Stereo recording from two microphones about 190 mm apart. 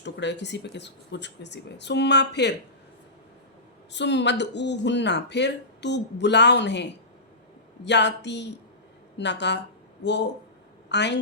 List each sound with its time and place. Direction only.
0.0 s speech: 65° left (ahead or behind)
3.9 s a woman's voice: 65° left (ahead or behind)